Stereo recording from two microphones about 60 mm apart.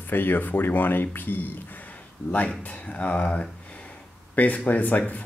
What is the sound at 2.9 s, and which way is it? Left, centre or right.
Speech, left.